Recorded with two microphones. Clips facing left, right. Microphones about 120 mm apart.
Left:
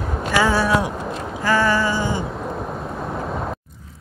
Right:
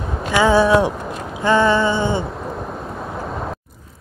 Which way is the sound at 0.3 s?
20° right (ahead or behind).